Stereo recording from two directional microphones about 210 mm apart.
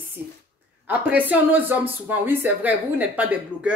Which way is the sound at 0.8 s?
5° right (ahead or behind).